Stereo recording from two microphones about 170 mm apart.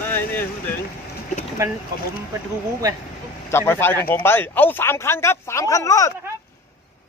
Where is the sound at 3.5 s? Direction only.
15° left (ahead or behind).